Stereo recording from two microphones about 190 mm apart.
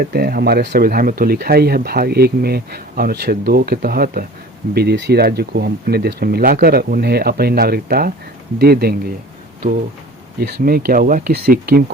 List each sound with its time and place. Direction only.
0.0 s speech: 55° right (ahead or behind)
10.4 s speech: 55° right (ahead or behind)